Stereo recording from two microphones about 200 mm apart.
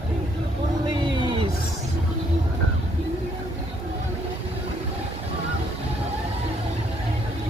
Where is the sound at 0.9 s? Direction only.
25° right (ahead or behind).